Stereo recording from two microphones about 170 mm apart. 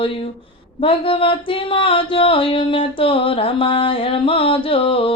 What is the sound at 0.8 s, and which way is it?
Speech, 30° left (ahead or behind).